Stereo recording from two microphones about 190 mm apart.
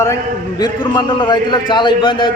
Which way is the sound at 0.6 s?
25° left (ahead or behind).